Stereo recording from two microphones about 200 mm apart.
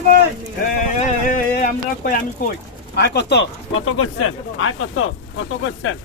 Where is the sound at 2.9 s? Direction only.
55° left (ahead or behind); by 6.0 s 85° left.